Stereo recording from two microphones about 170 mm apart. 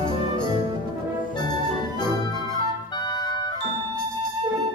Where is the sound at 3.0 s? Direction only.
25° left (ahead or behind).